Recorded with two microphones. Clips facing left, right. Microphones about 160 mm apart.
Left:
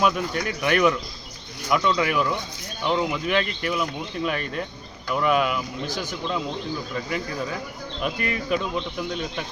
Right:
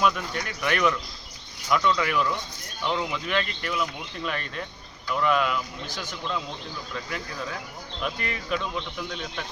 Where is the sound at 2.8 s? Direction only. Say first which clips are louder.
Left 4 dB; 5° left (ahead or behind).